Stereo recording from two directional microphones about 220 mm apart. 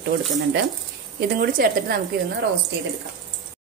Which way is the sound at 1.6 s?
40° right (ahead or behind).